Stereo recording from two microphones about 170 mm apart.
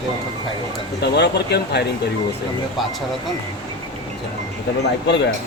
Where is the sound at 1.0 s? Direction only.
75° left (ahead or behind).